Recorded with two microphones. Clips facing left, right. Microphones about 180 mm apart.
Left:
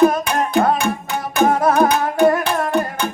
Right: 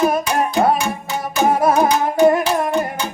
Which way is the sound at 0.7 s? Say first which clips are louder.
Left 1 dB; 55° left (ahead or behind).